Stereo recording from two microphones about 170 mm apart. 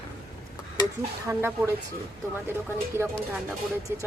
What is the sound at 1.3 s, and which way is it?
Speech, 15° right (ahead or behind).